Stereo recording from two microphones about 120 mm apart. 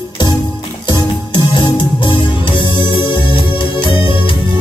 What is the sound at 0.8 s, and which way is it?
Music, 40° left (ahead or behind).